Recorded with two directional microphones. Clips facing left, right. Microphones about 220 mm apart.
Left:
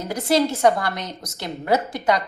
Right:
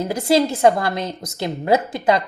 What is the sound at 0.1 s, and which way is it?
A woman's voice, 30° right (ahead or behind).